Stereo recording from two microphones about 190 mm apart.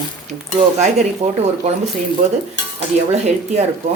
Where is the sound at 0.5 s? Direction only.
35° right (ahead or behind).